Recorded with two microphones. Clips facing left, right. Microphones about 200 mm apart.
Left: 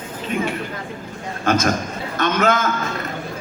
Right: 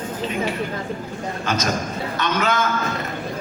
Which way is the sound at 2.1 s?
50° left (ahead or behind).